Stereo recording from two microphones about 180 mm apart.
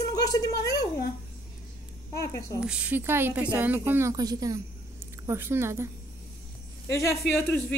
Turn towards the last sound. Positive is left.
turn(degrees=15)  # may be behind; listen again after turning